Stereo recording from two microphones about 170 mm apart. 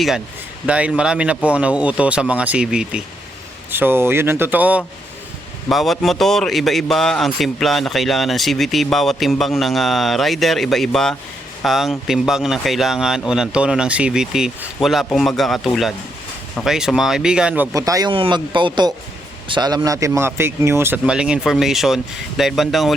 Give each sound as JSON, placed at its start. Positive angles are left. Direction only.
{"t": 0.7, "sound": "a man's voice", "side_deg": -5}
{"t": 17.7, "sound": "speech", "side_deg": -20}